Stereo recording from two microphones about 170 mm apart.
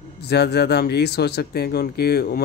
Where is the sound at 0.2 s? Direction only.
75° left (ahead or behind).